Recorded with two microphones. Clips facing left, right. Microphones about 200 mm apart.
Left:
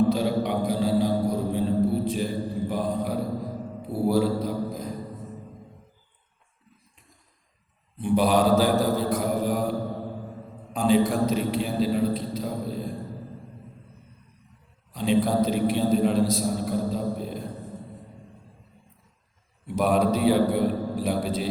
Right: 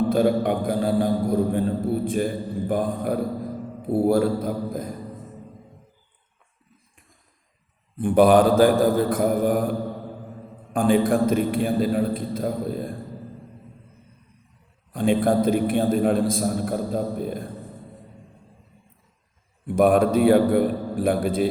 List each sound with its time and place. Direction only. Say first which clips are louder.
0.1 s music: right 4 dB; 50° right (ahead or behind)
3.8 s a man's voice: right 4 dB; 50° right (ahead or behind)
7.9 s a man's voice: right 6 dB; 50° right (ahead or behind)
14.9 s a man's voice: right 2 dB; 50° right (ahead or behind)
19.6 s a man's voice: right 5 dB; 50° right (ahead or behind)